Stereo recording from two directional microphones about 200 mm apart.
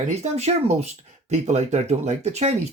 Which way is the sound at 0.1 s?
35° right (ahead or behind).